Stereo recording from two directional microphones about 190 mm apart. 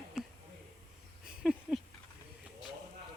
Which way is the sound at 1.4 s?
5° right (ahead or behind).